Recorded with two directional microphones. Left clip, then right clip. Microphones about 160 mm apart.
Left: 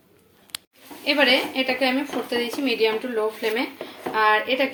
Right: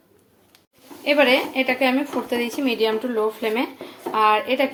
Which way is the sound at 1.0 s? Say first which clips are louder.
Right 2 dB; 15° right (ahead or behind).